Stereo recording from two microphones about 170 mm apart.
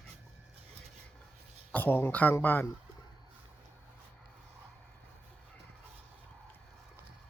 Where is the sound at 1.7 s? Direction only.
10° left (ahead or behind).